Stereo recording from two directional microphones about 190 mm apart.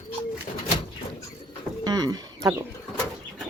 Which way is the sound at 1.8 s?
20° right (ahead or behind).